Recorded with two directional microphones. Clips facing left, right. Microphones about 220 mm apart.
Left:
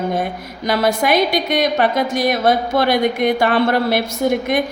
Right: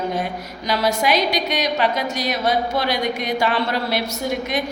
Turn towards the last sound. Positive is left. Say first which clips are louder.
# left 6 dB
turn(degrees=55)  # may be behind; listen again after turning